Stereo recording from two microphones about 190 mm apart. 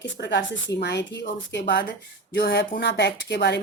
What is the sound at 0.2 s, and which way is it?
Speech, 65° left (ahead or behind).